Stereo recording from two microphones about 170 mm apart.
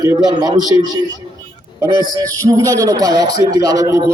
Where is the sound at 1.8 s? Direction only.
25° right (ahead or behind).